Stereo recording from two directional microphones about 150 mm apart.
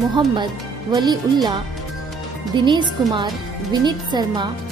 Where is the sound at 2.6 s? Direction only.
30° right (ahead or behind).